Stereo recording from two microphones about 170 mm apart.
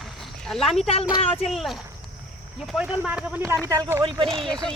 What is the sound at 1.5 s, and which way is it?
Speech, centre (ahead or behind).